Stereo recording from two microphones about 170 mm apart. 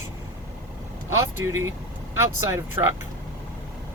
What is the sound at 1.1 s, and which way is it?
Speech, 15° right (ahead or behind).